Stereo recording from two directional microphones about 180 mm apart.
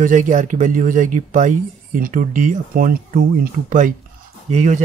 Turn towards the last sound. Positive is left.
turn(degrees=-40)  # may be behind; listen again after turning